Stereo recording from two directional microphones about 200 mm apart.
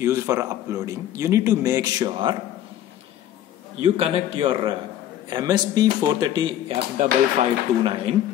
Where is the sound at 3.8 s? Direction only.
30° right (ahead or behind).